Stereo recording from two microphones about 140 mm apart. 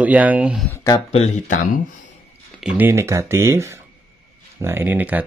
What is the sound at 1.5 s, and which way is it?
Speech, 70° left (ahead or behind).